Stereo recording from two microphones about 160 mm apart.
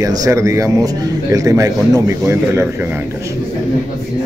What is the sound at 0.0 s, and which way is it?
A man's voice, 20° right (ahead or behind).